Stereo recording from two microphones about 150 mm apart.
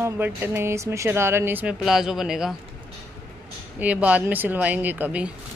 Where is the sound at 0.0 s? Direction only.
15° right (ahead or behind).